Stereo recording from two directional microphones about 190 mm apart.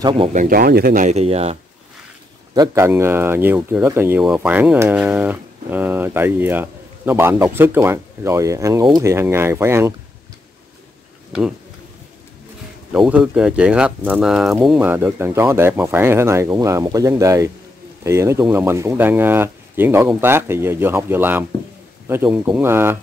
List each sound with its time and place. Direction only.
0.0 s speech: 25° right (ahead or behind)
0.3 s speech: 45° right (ahead or behind)
2.5 s speech: 15° right (ahead or behind)
12.9 s speech: 5° right (ahead or behind)